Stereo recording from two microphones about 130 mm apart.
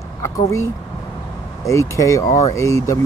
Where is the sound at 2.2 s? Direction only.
65° left (ahead or behind).